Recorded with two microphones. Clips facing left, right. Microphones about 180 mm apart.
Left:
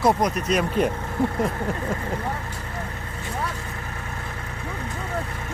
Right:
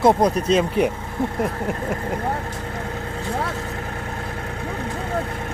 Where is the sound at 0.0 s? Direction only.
25° right (ahead or behind).